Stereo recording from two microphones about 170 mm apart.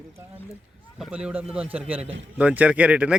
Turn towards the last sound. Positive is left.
turn(degrees=-5)  # may be behind; listen again after turning